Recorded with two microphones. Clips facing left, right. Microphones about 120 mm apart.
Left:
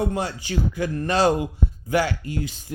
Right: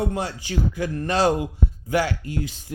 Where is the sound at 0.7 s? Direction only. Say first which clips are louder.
Left 1 dB; 80° left.